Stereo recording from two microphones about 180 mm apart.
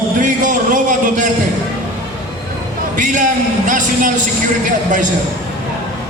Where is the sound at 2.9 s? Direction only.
45° right (ahead or behind).